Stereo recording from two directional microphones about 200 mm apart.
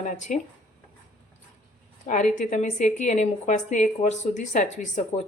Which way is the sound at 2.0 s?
40° left (ahead or behind).